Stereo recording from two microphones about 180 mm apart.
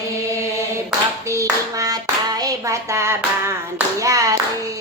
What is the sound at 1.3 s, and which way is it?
Hands, 20° right (ahead or behind).